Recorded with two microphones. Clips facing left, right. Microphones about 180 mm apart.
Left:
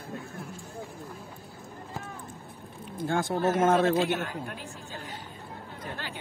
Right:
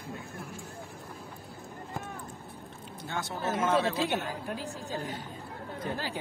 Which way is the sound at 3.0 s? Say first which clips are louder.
Left 8 dB; 50° left (ahead or behind).